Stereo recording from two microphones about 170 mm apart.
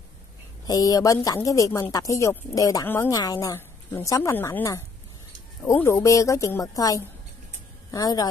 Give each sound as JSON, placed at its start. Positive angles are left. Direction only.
{"t": 0.7, "sound": "a woman's voice", "side_deg": 20}